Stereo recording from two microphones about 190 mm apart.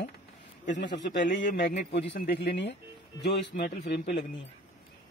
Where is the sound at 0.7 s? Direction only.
65° left (ahead or behind).